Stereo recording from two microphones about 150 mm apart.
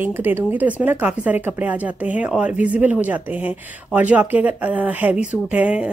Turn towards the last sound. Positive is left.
turn(degrees=-5)  # may be behind; listen again after turning